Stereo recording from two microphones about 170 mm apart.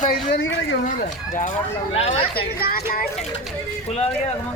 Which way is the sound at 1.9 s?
35° left (ahead or behind).